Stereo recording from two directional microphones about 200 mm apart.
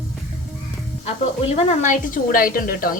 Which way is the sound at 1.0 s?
30° left (ahead or behind).